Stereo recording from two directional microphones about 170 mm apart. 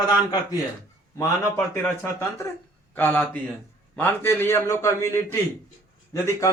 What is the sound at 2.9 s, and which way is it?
A man's voice, 10° left (ahead or behind).